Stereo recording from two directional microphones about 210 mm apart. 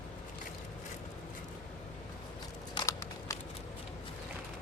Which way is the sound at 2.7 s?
15° left (ahead or behind).